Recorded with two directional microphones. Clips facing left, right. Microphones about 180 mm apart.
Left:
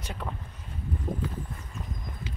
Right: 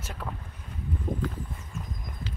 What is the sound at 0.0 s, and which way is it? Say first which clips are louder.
Speech: left 1 dB; centre (ahead or behind).